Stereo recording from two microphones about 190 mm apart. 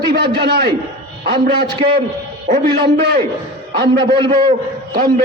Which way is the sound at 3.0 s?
55° right (ahead or behind).